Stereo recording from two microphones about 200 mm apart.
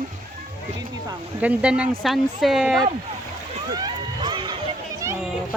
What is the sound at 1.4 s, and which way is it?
Speech, 5° right (ahead or behind).